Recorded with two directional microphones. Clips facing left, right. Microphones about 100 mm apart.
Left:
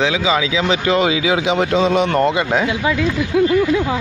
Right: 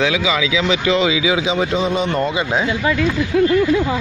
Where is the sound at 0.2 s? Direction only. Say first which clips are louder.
Left 1 dB; 40° left (ahead or behind); by 2.7 s 70° left (ahead or behind).